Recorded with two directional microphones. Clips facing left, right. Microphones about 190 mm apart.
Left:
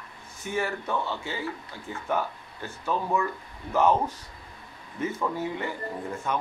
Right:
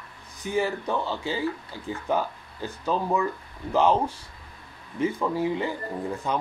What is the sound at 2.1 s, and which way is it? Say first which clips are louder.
Speech: right 1 dB; 35° right (ahead or behind).